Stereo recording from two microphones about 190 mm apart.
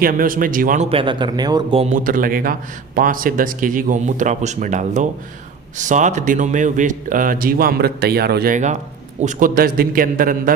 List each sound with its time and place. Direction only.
0.0 s speech: 45° right (ahead or behind)
0.9 s speech: 25° right (ahead or behind)
2.0 s speech: 45° right (ahead or behind)
8.5 s a man's voice: 40° right (ahead or behind)